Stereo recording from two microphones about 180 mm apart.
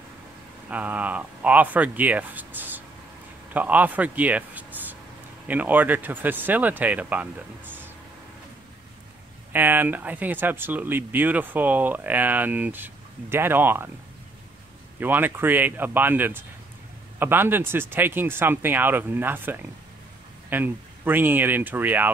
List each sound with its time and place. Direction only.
0.7 s speech: 10° right (ahead or behind)
9.5 s speech: 10° right (ahead or behind)
15.0 s speech: 10° right (ahead or behind)